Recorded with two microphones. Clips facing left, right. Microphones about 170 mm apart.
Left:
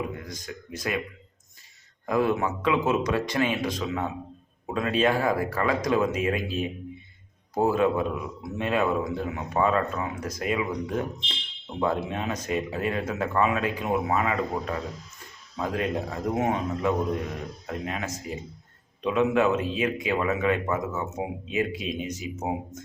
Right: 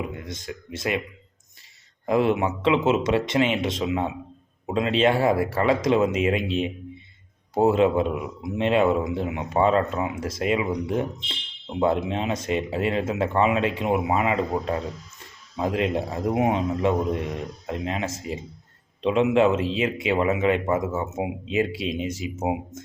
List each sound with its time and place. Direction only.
0.2 s speech: 25° right (ahead or behind)
2.0 s speech: 25° right (ahead or behind)